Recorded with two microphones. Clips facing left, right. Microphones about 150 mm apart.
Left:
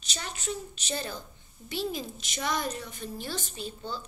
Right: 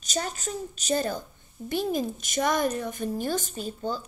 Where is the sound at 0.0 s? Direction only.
45° right (ahead or behind).